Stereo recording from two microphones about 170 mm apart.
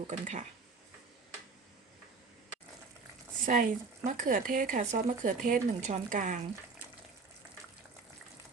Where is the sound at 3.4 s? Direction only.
50° right (ahead or behind).